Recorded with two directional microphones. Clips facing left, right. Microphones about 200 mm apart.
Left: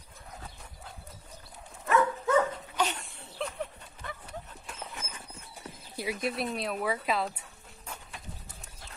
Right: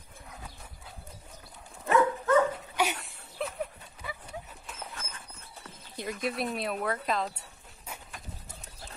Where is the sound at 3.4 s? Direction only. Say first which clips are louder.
Right 1 dB; 5° right (ahead or behind).